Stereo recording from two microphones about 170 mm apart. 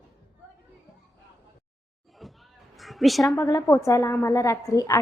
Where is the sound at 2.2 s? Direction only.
Centre (ahead or behind).